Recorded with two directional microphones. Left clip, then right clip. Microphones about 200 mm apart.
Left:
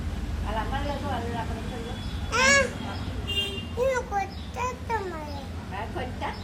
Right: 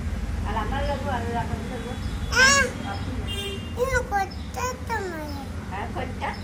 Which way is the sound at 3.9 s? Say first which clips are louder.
Right 3 dB; 5° left (ahead or behind).